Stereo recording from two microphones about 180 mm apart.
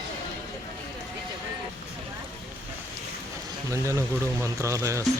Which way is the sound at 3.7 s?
15° right (ahead or behind).